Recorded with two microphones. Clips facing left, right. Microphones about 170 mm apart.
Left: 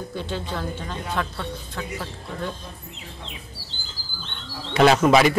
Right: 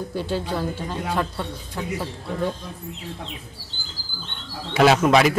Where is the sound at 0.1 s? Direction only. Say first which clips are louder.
Right 5 dB; 10° right (ahead or behind).